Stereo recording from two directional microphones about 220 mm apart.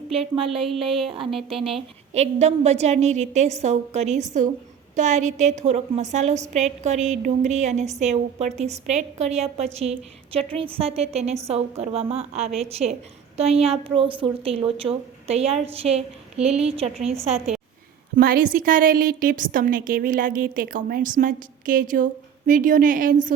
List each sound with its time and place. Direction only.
0.3 s a woman's voice: 25° right (ahead or behind)
18.2 s a woman's voice: 40° right (ahead or behind)